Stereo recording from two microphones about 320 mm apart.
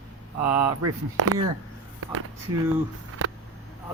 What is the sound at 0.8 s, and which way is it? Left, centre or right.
Speech, right.